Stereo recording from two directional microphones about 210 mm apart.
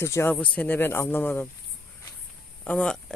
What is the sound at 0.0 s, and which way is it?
Speech, 10° left (ahead or behind).